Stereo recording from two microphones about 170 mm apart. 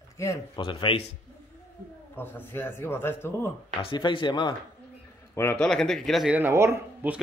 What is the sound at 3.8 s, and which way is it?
Speech, 30° left (ahead or behind).